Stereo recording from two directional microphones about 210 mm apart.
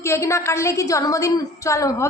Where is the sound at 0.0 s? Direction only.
15° left (ahead or behind).